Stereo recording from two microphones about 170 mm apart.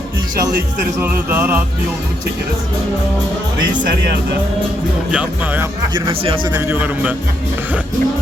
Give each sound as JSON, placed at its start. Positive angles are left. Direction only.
{"t": 1.0, "sound": "music", "side_deg": -10}
{"t": 5.1, "sound": "music", "side_deg": -10}
{"t": 5.9, "sound": "speech", "side_deg": -30}
{"t": 6.6, "sound": "music", "side_deg": -10}